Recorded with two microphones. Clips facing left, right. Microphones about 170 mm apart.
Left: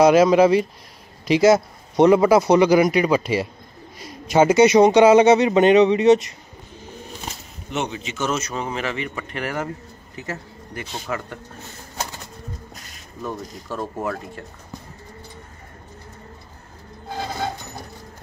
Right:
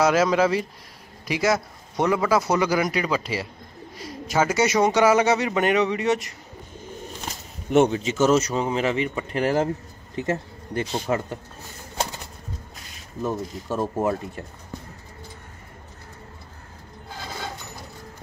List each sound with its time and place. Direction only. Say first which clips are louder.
0.0 s speech: left 6 dB; 20° left (ahead or behind)
7.7 s speech: right 9 dB; 45° right (ahead or behind)
8.5 s speech: right 3 dB; 25° right (ahead or behind)
13.9 s speech: right 3 dB; 25° right (ahead or behind)